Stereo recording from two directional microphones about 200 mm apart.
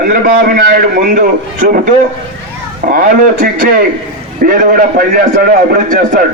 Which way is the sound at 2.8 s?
45° right (ahead or behind).